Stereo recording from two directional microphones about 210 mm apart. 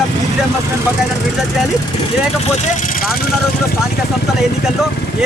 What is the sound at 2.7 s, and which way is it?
Speech, 40° left (ahead or behind).